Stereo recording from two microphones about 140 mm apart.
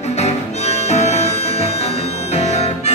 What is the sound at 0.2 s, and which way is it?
Music, 50° left (ahead or behind).